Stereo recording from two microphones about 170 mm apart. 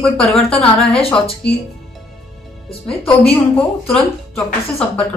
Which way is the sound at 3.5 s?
5° left (ahead or behind).